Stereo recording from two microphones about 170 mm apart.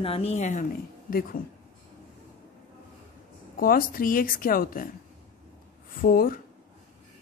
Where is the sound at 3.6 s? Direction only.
55° left (ahead or behind).